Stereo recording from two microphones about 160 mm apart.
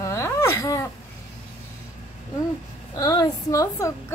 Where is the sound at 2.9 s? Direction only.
25° left (ahead or behind).